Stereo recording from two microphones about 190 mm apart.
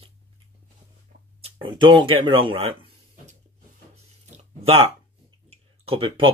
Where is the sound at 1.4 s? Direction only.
25° right (ahead or behind).